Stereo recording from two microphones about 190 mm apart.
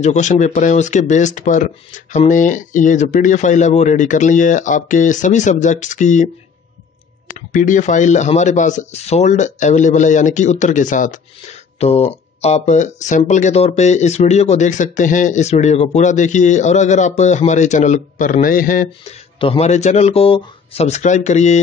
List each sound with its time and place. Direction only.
0.0 s speech: 40° left (ahead or behind)
7.3 s speech: 40° left (ahead or behind)
19.4 s speech: 30° left (ahead or behind)